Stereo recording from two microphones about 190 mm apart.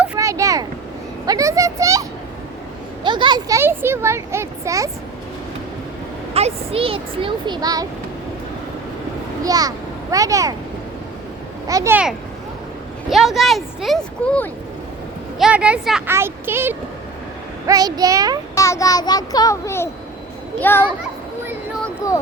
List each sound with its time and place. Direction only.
0.0 s vehicle: 10° right (ahead or behind)
1.3 s speech: 15° right (ahead or behind)
6.3 s speech: 30° right (ahead or behind)
9.4 s a child's voice: 20° right (ahead or behind)
11.7 s speech: 15° right (ahead or behind); by 14.5 s 5° left (ahead or behind)
15.4 s speech: 5° right (ahead or behind)
18.5 s a child's voice: 15° left (ahead or behind)